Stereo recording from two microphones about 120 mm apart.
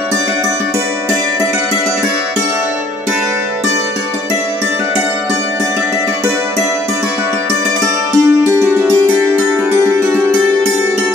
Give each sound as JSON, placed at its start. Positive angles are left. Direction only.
{"t": 8.1, "sound": "music", "side_deg": -20}